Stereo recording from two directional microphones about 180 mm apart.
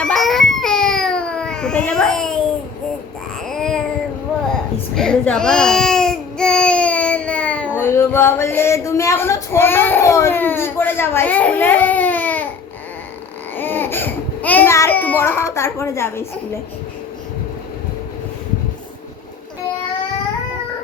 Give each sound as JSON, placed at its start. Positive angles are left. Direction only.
{"t": 0.0, "sound": "baby cry", "side_deg": 0}
{"t": 3.4, "sound": "a sound", "side_deg": 5}
{"t": 4.5, "sound": "baby cry", "side_deg": 5}
{"t": 13.6, "sound": "speech", "side_deg": 10}